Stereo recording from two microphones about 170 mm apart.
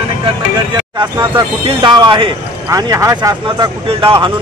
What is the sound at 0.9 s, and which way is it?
Speech, 25° right (ahead or behind).